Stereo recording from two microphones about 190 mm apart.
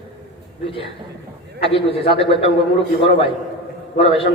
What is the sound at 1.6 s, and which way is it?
Speech, 30° left (ahead or behind).